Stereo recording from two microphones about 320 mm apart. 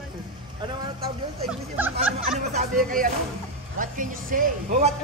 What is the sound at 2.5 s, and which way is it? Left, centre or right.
Speech, right.